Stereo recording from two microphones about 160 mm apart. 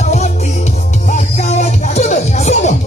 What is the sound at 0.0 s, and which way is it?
Music, 45° left (ahead or behind).